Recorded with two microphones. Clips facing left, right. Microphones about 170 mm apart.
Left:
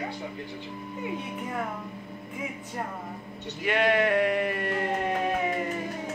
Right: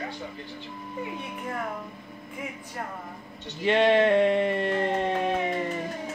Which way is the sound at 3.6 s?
25° right (ahead or behind).